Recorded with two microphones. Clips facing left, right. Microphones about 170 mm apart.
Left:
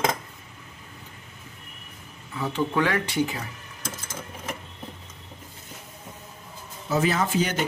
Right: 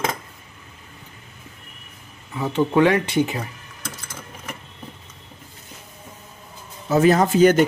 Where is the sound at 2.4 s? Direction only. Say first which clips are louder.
Right 7 dB; 20° right (ahead or behind).